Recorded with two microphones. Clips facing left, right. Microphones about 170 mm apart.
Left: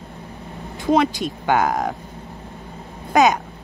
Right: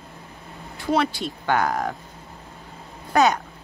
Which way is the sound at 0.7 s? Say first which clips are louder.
Left 5 dB; 15° left (ahead or behind).